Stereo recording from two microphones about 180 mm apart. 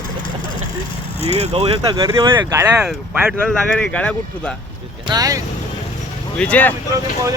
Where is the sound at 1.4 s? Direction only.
30° right (ahead or behind).